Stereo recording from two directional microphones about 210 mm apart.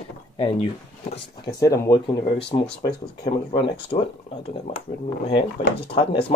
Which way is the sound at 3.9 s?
30° left (ahead or behind).